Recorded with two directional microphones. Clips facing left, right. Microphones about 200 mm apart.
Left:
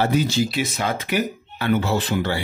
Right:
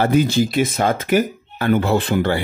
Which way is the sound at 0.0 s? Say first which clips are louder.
Right 4 dB; 55° right (ahead or behind).